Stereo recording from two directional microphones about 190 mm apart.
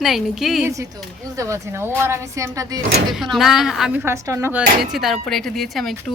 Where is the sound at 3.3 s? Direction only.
Centre (ahead or behind).